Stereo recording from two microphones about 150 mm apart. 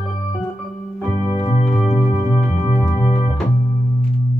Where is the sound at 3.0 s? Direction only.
40° left (ahead or behind).